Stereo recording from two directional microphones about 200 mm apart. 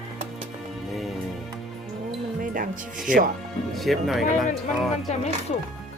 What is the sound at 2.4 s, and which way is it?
Music, 45° right (ahead or behind).